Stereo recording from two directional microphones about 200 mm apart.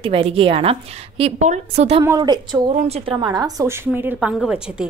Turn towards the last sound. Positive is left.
turn(degrees=-5)  # may be behind; listen again after turning